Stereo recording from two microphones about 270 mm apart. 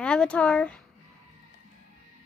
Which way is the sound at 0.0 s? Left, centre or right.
Centre.